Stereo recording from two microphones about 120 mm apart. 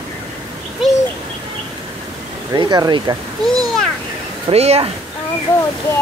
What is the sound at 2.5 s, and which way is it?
Speech, 35° right (ahead or behind).